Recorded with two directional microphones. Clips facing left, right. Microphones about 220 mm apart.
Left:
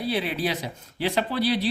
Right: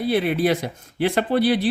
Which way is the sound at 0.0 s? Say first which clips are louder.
Right 6 dB; 50° right (ahead or behind).